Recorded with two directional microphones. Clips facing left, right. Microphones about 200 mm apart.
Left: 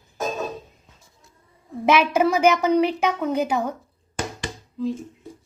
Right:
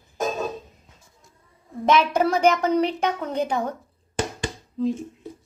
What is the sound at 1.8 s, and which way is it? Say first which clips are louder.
A woman's voice: left 1 dB; 5° left (ahead or behind).